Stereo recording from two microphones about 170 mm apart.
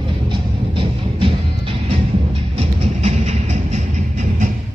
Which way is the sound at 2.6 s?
40° right (ahead or behind).